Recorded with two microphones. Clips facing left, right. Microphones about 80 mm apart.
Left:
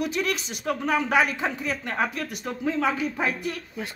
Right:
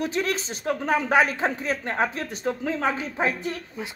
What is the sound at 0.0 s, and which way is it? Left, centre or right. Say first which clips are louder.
Speech: right 1 dB; right.